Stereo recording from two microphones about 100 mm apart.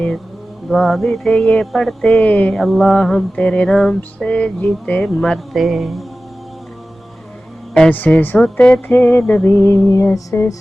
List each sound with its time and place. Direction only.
0.7 s music: centre (ahead or behind)
2.6 s mantra: centre (ahead or behind)
7.7 s mantra: 10° left (ahead or behind)
8.9 s music: 20° left (ahead or behind)